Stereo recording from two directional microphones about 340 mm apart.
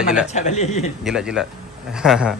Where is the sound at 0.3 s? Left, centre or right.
Centre.